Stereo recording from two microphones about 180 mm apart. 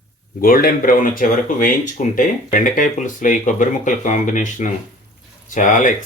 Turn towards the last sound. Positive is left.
turn(degrees=45)  # may be behind; listen again after turning